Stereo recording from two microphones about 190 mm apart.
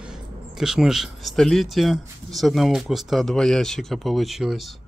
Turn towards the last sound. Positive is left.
turn(degrees=0)  # may be behind; listen again after turning